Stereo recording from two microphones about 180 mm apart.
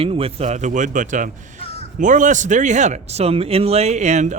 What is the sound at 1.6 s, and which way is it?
Crow, 35° left (ahead or behind).